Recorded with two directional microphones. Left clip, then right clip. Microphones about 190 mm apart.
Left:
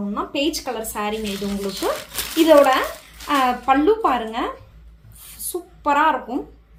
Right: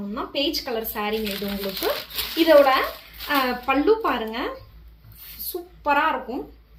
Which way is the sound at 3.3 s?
40° left (ahead or behind).